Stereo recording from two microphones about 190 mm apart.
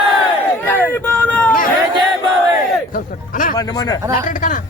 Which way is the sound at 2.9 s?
45° left (ahead or behind).